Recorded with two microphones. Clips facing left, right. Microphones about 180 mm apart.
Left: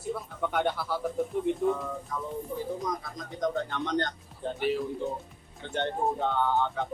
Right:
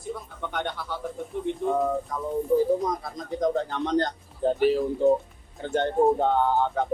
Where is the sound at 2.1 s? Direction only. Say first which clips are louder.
Right 10 dB; 40° right (ahead or behind).